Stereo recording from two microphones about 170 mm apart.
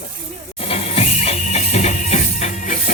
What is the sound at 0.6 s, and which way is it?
Music, 35° left (ahead or behind).